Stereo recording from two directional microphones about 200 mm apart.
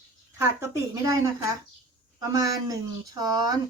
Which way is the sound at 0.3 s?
15° right (ahead or behind).